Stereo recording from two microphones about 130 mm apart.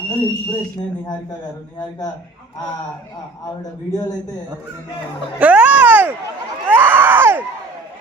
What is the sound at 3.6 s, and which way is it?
Speech, 30° left (ahead or behind).